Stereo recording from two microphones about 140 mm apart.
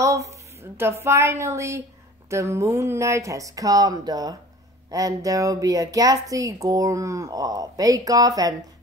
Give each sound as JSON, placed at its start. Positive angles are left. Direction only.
{"t": 0.0, "sound": "a woman's voice", "side_deg": -20}